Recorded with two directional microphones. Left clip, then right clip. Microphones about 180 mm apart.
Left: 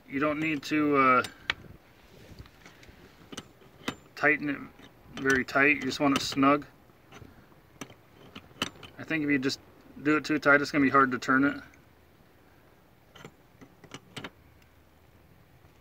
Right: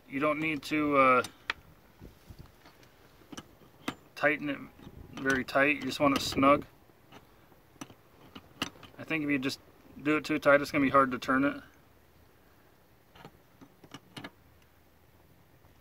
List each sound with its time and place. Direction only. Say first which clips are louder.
0.1 s speech: left 1 dB; 25° right (ahead or behind)
4.2 s speech: left 3 dB; 30° right (ahead or behind)
7.8 s a sound: left 3 dB; 10° left (ahead or behind)
8.9 s speech: left 3 dB; 30° right (ahead or behind)